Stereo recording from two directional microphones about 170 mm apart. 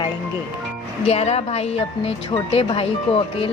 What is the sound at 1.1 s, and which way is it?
Speech, 40° left (ahead or behind).